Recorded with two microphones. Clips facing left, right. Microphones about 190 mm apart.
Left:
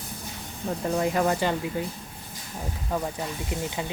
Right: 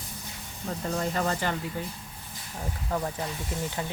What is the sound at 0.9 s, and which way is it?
Speech, 10° left (ahead or behind).